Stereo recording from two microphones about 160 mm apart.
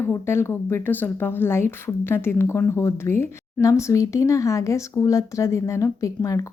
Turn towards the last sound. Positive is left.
turn(degrees=20)  # may be behind; listen again after turning